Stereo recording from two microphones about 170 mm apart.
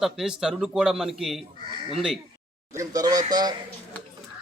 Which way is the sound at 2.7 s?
20° right (ahead or behind).